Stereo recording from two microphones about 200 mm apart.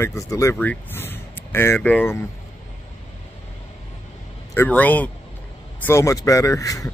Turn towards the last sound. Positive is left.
turn(degrees=15)  # may be behind; listen again after turning